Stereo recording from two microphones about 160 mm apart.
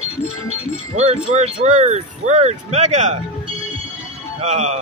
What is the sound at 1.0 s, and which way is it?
Speech, 40° right (ahead or behind).